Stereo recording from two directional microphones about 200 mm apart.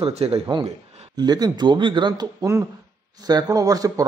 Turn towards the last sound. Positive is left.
turn(degrees=-15)  # may be behind; listen again after turning